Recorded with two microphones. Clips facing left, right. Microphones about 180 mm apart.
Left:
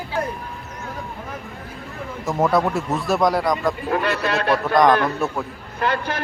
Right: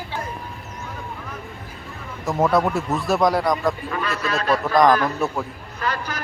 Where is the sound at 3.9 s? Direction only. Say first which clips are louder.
Left 4 dB; 65° left (ahead or behind).